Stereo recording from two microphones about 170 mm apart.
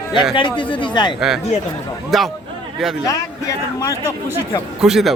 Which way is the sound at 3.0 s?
20° left (ahead or behind).